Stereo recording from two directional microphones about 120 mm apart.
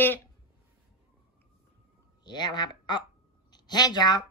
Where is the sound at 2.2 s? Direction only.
35° left (ahead or behind).